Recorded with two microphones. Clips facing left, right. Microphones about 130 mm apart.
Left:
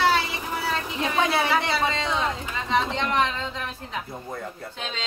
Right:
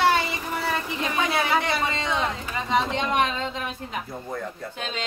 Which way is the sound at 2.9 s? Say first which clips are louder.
Right 1 dB; 15° right (ahead or behind).